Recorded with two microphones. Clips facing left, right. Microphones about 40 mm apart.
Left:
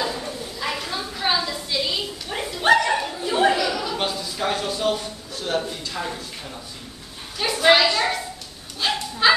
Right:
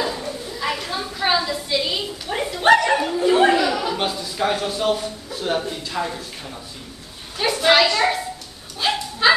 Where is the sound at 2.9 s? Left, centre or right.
Centre.